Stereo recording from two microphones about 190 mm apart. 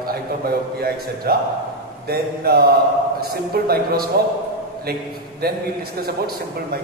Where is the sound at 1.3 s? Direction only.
55° right (ahead or behind).